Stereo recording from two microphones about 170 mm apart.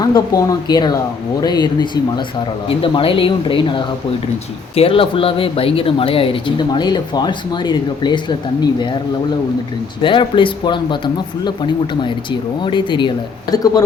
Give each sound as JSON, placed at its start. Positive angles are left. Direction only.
{"t": 0.0, "sound": "speech", "side_deg": 20}
{"t": 10.0, "sound": "speech", "side_deg": 30}